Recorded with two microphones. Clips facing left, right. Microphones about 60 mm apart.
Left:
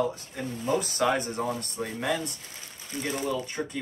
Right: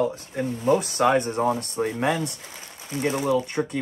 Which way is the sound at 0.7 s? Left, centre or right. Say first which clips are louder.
Right 2 dB; right.